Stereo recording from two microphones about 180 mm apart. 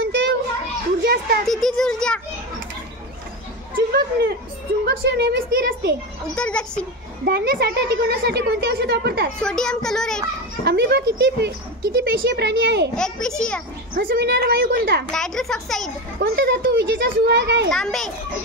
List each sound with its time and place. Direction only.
0.0 s children playing: 75° right (ahead or behind)
1.0 s speech: 60° right (ahead or behind)
1.4 s a child's voice: centre (ahead or behind)
4.8 s a woman's voice: 65° right (ahead or behind)
6.3 s a child's voice: 5° left (ahead or behind)
7.2 s speech: 60° right (ahead or behind)
9.4 s a child's voice: 5° left (ahead or behind)
10.6 s speech: 65° right (ahead or behind)
12.9 s a child's voice: 5° left (ahead or behind)
13.9 s a woman's voice: 60° right (ahead or behind)
15.0 s a child's voice: 5° left (ahead or behind)
16.2 s speech: 60° right (ahead or behind)
17.6 s a child's voice: centre (ahead or behind)